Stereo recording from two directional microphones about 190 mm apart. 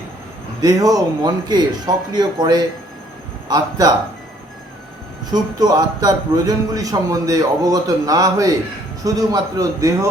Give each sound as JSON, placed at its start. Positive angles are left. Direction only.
{"t": 0.6, "sound": "a man's voice", "side_deg": -20}
{"t": 5.3, "sound": "a man's voice", "side_deg": -20}